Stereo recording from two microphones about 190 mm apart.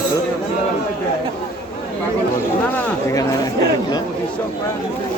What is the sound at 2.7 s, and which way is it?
Speech, 15° left (ahead or behind).